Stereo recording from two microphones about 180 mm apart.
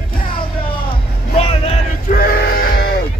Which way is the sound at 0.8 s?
30° left (ahead or behind).